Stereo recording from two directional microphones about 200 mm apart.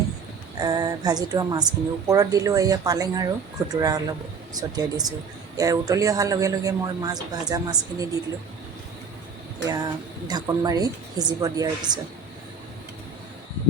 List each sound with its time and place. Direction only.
0.6 s a man's voice: 20° right (ahead or behind)
9.6 s speech: 20° right (ahead or behind)